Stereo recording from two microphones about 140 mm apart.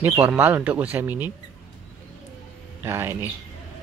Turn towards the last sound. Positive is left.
turn(degrees=-15)  # may be behind; listen again after turning